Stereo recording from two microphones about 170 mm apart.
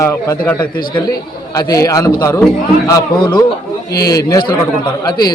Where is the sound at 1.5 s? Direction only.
20° left (ahead or behind).